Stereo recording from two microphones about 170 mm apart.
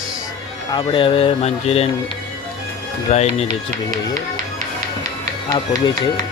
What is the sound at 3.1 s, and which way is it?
Speech, 40° left (ahead or behind).